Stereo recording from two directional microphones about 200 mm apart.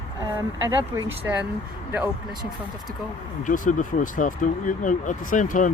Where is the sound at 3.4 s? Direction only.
40° left (ahead or behind).